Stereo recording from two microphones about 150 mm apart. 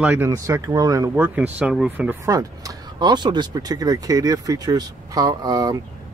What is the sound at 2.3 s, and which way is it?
Speech, 25° right (ahead or behind).